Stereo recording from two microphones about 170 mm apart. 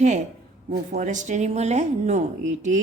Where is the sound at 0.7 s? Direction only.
55° right (ahead or behind).